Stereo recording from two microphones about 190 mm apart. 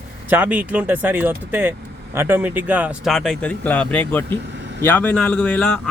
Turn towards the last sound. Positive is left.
turn(degrees=5)  # may be behind; listen again after turning